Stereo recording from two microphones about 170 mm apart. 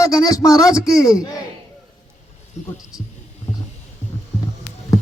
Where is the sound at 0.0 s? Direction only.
20° left (ahead or behind).